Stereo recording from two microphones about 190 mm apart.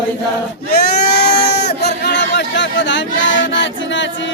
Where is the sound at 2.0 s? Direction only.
65° left (ahead or behind).